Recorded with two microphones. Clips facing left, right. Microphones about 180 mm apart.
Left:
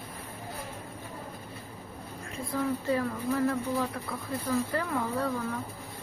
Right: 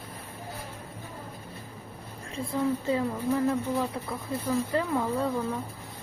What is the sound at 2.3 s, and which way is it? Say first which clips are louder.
Speech: right 3 dB; 25° right (ahead or behind).